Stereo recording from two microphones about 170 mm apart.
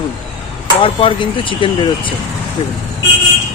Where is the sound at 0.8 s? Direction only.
30° left (ahead or behind).